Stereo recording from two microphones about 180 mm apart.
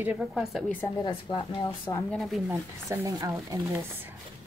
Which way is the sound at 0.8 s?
20° left (ahead or behind).